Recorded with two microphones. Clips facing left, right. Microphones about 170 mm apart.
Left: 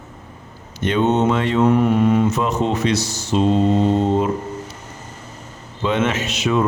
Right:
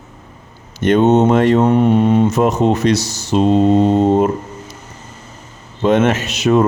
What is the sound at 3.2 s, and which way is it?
Mantra, 55° right (ahead or behind).